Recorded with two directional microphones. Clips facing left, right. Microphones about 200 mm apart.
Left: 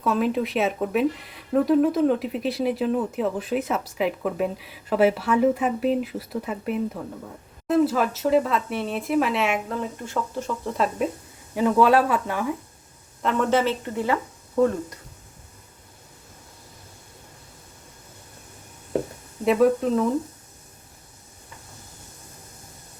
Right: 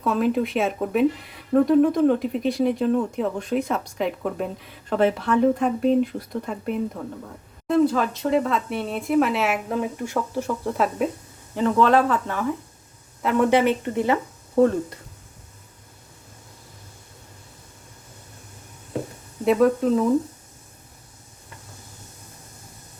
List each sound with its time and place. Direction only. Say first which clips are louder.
0.0 s speech: right 1 dB; centre (ahead or behind)
9.6 s speech: right 4 dB; 15° right (ahead or behind)
11.5 s speech: even; 10° left (ahead or behind)
13.2 s speech: right 3 dB; 15° right (ahead or behind)
19.5 s speech: right 1 dB; centre (ahead or behind)